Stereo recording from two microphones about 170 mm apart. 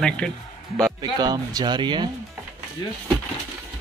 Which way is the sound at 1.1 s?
20° right (ahead or behind).